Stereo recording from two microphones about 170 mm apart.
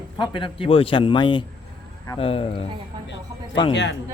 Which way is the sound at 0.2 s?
30° left (ahead or behind).